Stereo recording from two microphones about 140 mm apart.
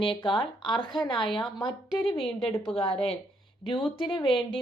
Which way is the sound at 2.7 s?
45° left (ahead or behind).